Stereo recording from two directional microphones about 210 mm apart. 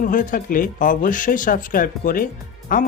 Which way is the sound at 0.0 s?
40° left (ahead or behind).